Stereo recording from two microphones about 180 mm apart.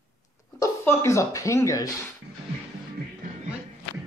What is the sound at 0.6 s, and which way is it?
Speech, 15° left (ahead or behind).